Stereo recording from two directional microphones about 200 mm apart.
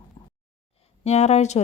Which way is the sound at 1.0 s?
35° left (ahead or behind).